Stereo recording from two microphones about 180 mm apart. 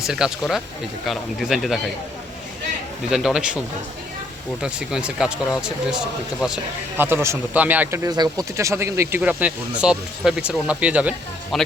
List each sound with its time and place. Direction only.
0.0 s speech: 5° right (ahead or behind)
3.1 s speech: centre (ahead or behind)
4.6 s speech: 5° right (ahead or behind)